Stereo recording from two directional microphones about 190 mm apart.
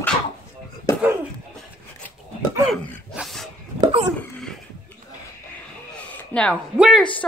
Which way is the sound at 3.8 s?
25° right (ahead or behind).